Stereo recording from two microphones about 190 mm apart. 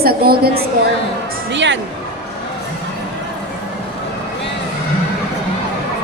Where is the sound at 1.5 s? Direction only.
70° right (ahead or behind).